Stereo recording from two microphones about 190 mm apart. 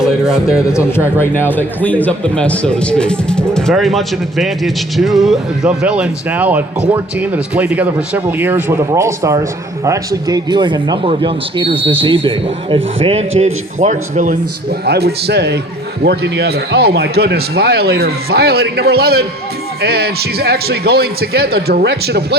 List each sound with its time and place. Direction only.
1.2 s a man's voice: 10° left (ahead or behind); by 22.4 s 60° right (ahead or behind)